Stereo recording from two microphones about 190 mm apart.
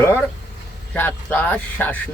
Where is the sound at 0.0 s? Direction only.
10° left (ahead or behind).